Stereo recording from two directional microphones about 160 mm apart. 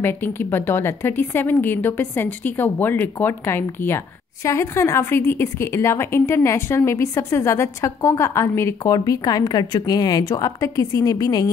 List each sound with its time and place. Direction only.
0.0 s a woman's voice: 15° left (ahead or behind)